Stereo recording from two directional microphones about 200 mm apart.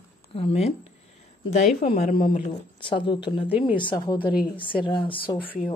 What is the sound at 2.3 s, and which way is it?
A man's voice, 25° left (ahead or behind).